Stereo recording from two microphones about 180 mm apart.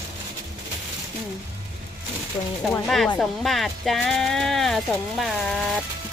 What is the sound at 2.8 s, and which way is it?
Speech, centre (ahead or behind).